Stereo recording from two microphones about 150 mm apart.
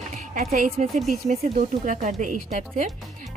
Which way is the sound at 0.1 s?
60° right (ahead or behind).